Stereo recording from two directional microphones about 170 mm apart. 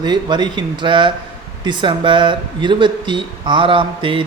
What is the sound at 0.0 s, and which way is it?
A man's voice, 25° right (ahead or behind).